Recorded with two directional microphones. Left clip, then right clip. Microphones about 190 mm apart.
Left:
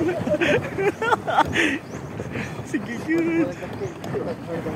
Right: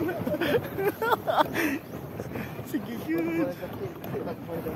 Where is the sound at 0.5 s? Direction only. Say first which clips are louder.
Left 5 dB; 15° right (ahead or behind).